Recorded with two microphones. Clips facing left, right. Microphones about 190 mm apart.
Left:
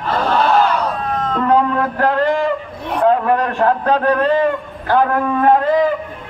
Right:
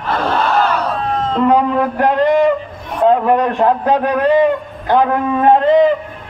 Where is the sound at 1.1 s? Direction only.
30° right (ahead or behind).